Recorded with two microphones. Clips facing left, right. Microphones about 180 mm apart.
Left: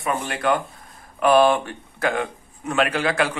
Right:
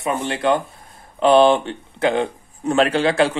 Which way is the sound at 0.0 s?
25° right (ahead or behind).